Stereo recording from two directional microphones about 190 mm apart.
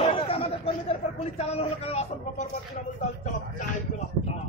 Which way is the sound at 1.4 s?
35° left (ahead or behind).